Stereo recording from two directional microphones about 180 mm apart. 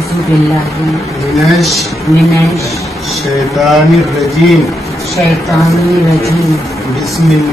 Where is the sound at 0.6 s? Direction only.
Centre (ahead or behind).